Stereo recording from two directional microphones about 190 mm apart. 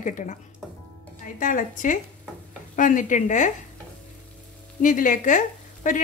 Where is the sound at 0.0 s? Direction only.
40° left (ahead or behind).